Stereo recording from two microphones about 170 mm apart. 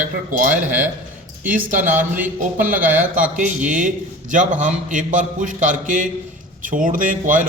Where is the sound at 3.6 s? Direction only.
50° right (ahead or behind).